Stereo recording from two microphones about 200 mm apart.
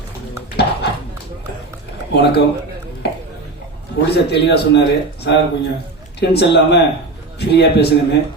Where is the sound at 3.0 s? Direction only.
55° left (ahead or behind).